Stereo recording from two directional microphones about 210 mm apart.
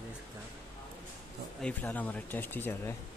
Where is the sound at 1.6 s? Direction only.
5° left (ahead or behind).